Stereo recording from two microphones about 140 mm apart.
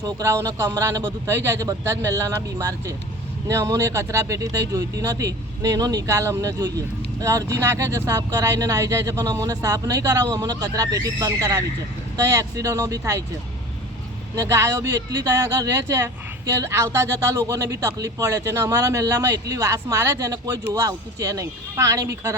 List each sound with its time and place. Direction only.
0.0 s speech: 20° right (ahead or behind)
14.3 s speech: 20° right (ahead or behind)